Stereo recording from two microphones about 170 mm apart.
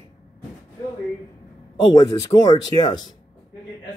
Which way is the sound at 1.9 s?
20° left (ahead or behind).